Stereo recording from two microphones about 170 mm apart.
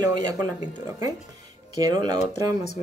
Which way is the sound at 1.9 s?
25° right (ahead or behind).